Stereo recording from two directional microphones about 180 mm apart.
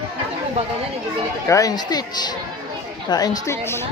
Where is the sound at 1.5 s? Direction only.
20° left (ahead or behind).